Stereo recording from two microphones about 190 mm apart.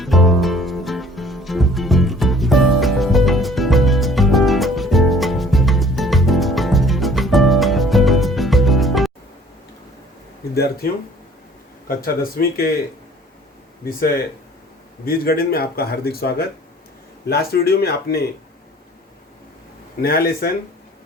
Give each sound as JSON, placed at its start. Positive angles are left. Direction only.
{"t": 0.0, "sound": "music", "side_deg": 0}
{"t": 11.9, "sound": "speech", "side_deg": 50}
{"t": 15.0, "sound": "speech", "side_deg": 50}
{"t": 20.0, "sound": "speech", "side_deg": 50}